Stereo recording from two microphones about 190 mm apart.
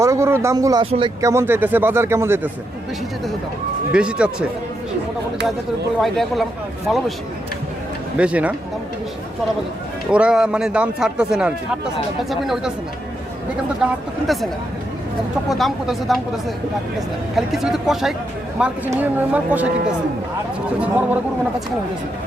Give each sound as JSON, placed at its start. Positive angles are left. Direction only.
{"t": 0.0, "sound": "speech", "side_deg": -15}
{"t": 1.2, "sound": "speech", "side_deg": -15}
{"t": 3.9, "sound": "a man's voice", "side_deg": -5}
{"t": 6.0, "sound": "a man's voice", "side_deg": 0}
{"t": 8.2, "sound": "speech", "side_deg": -5}
{"t": 10.1, "sound": "a man's voice", "side_deg": -5}
{"t": 13.8, "sound": "a man's voice", "side_deg": -5}
{"t": 15.4, "sound": "a man's voice", "side_deg": 0}
{"t": 17.3, "sound": "a man's voice", "side_deg": 0}
{"t": 20.8, "sound": "speech", "side_deg": -10}